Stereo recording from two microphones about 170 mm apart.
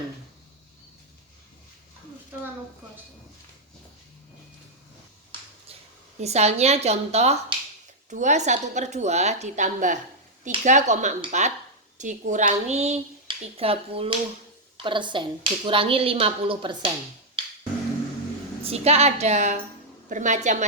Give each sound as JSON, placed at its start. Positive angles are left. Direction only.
{"t": 6.1, "sound": "a woman's voice", "side_deg": -40}
{"t": 18.6, "sound": "a woman's voice", "side_deg": -35}